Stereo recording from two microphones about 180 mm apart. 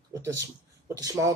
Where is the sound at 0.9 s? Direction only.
20° right (ahead or behind).